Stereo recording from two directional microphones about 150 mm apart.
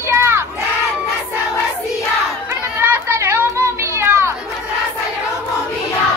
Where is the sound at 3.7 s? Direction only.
20° right (ahead or behind).